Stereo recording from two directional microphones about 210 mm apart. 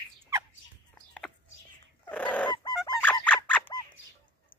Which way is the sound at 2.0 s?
5° left (ahead or behind).